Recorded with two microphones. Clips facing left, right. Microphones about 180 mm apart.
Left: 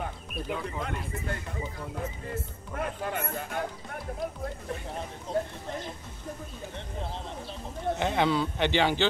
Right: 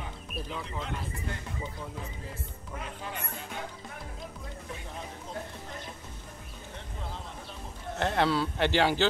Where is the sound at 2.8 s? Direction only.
55° left (ahead or behind).